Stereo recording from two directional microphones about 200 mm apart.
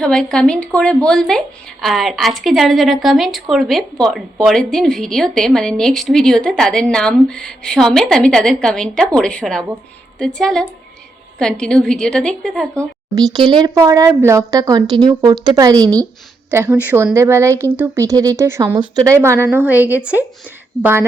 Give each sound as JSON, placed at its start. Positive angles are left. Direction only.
{"t": 0.0, "sound": "a woman's voice", "side_deg": 5}
{"t": 12.8, "sound": "speech", "side_deg": -20}